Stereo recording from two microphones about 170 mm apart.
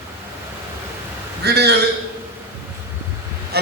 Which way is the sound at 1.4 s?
75° right (ahead or behind).